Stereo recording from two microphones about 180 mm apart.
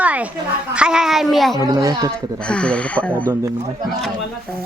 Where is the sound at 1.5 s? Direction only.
20° right (ahead or behind).